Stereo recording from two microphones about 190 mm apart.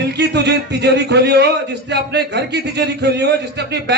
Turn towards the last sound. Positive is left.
turn(degrees=-65)  # may be behind; listen again after turning